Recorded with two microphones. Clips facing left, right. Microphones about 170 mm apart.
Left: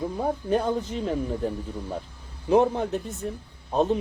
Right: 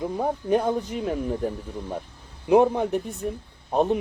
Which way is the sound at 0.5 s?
10° right (ahead or behind).